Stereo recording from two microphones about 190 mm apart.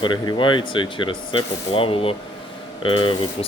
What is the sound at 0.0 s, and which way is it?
Speech, 25° left (ahead or behind).